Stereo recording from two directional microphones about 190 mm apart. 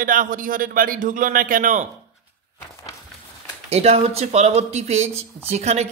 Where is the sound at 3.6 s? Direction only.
35° right (ahead or behind).